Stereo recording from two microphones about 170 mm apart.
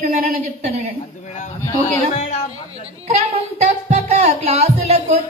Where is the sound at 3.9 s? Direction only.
40° right (ahead or behind).